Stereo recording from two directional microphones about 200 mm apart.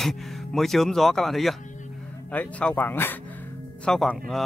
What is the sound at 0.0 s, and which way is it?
A man's voice, centre (ahead or behind).